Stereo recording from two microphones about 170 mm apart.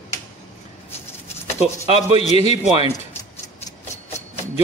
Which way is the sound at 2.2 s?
40° left (ahead or behind).